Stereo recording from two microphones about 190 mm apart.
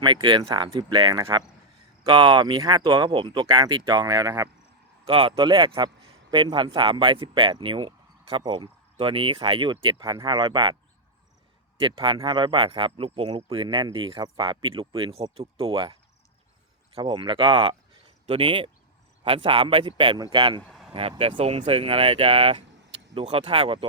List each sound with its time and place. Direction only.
0.0 s speech: 25° right (ahead or behind)
11.8 s speech: 25° right (ahead or behind)
20.6 s vehicle: centre (ahead or behind)
21.2 s speech: 30° right (ahead or behind)